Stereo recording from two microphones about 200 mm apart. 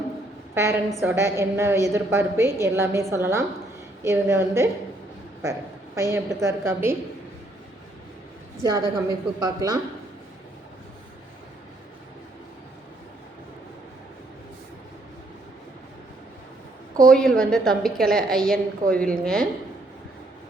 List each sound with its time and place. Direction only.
0.5 s a woman's voice: 15° right (ahead or behind)
8.6 s a woman's voice: 15° right (ahead or behind)
17.0 s a woman's voice: 5° left (ahead or behind)